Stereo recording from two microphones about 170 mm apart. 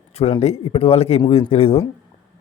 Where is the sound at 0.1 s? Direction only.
35° left (ahead or behind).